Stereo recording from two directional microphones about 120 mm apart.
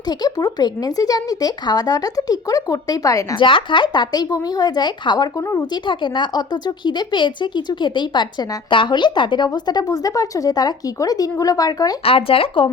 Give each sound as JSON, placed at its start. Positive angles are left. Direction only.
{"t": 0.1, "sound": "speech", "side_deg": 35}
{"t": 3.3, "sound": "speech", "side_deg": 45}
{"t": 5.8, "sound": "speech", "side_deg": 40}
{"t": 12.0, "sound": "speech", "side_deg": 50}